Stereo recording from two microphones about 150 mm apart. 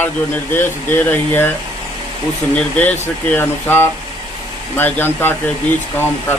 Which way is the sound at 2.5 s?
10° left (ahead or behind).